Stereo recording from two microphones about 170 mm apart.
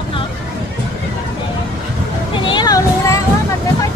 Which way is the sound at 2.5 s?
20° left (ahead or behind).